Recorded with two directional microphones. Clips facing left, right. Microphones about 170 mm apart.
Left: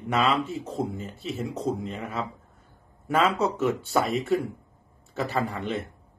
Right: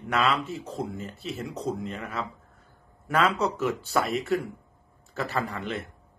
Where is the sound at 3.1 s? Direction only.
Centre (ahead or behind).